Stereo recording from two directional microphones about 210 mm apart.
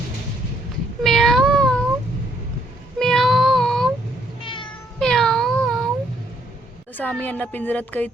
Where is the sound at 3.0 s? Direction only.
Centre (ahead or behind).